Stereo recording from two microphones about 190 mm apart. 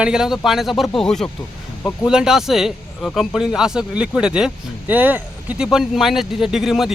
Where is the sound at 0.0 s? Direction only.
5° right (ahead or behind).